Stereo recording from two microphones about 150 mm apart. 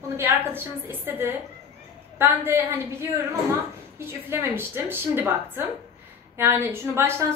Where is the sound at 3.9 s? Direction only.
15° right (ahead or behind).